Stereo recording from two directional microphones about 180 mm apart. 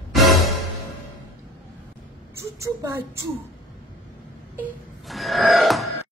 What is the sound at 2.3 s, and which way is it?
Speech, 15° right (ahead or behind).